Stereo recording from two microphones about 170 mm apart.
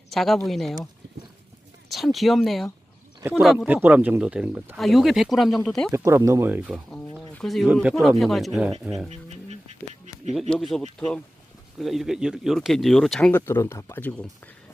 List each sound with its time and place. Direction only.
0.1 s speech: centre (ahead or behind)
1.9 s speech: centre (ahead or behind)
5.9 s speech: 15° right (ahead or behind)
6.9 s speech: 5° left (ahead or behind)
9.0 s a sound: 40° right (ahead or behind)
10.5 s speech: centre (ahead or behind)